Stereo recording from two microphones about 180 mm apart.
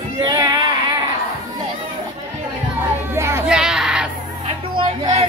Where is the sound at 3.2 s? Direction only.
15° right (ahead or behind).